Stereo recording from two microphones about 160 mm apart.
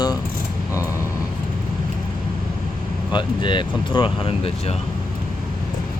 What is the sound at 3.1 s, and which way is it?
Speech, 30° left (ahead or behind).